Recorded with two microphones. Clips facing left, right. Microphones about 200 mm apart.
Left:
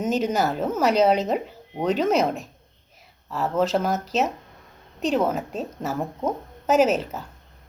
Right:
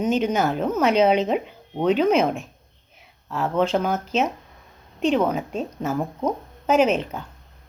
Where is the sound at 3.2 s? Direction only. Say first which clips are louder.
Right 1 dB; centre (ahead or behind).